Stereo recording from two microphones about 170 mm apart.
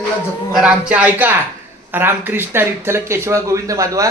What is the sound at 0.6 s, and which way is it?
A man's voice, 5° right (ahead or behind).